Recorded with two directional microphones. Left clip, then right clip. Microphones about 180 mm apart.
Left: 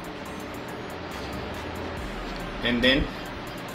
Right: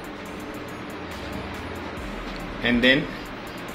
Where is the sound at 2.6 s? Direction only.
15° right (ahead or behind).